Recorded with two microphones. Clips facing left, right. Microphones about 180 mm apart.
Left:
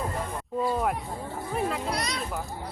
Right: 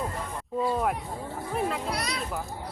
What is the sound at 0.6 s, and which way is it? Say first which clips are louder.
A child's voice: even; centre (ahead or behind).